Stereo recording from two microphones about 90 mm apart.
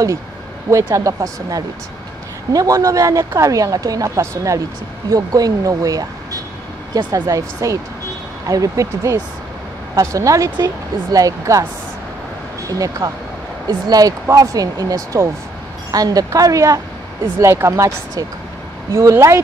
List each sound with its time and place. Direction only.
0.9 s speech: 40° right (ahead or behind)
5.1 s speech: 45° right (ahead or behind)
7.2 s speech: 40° right (ahead or behind)
12.6 s speech: 40° right (ahead or behind)